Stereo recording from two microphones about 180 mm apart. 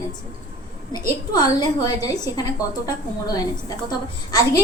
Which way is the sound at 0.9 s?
20° left (ahead or behind).